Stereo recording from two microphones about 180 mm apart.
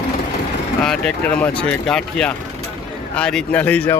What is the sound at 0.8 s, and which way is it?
Speech, 5° left (ahead or behind).